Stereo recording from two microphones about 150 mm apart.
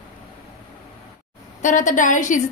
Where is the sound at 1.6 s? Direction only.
60° left (ahead or behind).